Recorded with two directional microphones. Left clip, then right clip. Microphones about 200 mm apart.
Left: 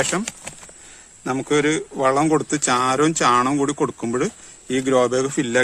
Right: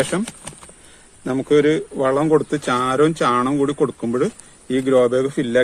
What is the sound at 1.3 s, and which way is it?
Speech, 45° left (ahead or behind).